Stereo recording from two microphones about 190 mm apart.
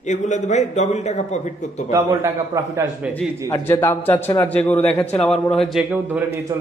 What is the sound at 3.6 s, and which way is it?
A man's voice, 10° left (ahead or behind).